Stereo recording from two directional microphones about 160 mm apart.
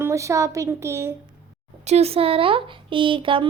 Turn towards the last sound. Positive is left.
turn(degrees=-30)  # may be behind; listen again after turning